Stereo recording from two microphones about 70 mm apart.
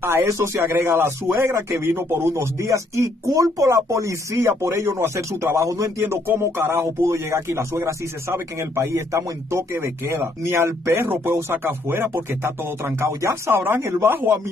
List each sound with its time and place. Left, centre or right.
0.0 s speech: right
6.0 s speech: right